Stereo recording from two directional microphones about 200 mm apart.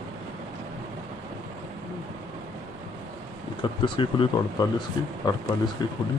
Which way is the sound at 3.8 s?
25° left (ahead or behind).